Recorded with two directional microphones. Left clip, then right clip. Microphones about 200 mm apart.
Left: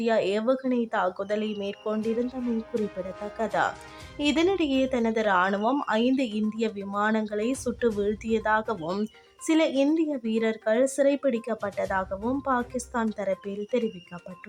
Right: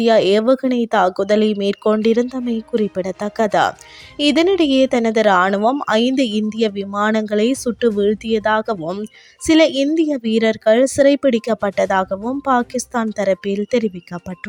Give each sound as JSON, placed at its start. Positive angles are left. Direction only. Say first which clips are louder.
{"t": 0.0, "sound": "a woman's voice", "louder": "right 11 dB", "side_deg": -35}